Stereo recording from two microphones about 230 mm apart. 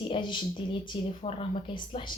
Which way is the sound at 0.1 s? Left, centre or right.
Left.